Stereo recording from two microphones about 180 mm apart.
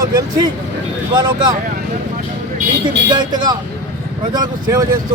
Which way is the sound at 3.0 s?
25° right (ahead or behind).